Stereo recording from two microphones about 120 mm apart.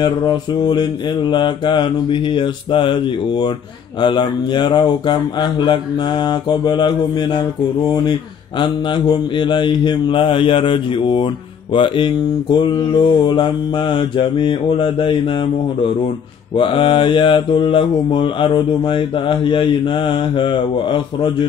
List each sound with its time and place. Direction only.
0.0 s speech: 35° left (ahead or behind)
13.3 s mantra: 40° left (ahead or behind)
16.5 s mantra: 45° left (ahead or behind)